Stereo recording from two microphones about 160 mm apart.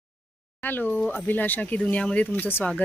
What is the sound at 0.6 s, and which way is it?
Speech, 10° left (ahead or behind).